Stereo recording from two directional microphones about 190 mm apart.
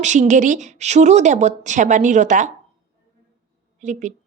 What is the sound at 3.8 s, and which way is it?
Speech, 40° right (ahead or behind).